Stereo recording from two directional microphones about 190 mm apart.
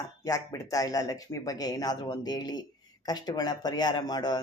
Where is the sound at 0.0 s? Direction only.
20° left (ahead or behind).